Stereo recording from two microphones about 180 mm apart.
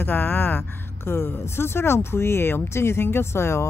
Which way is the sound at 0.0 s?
10° left (ahead or behind).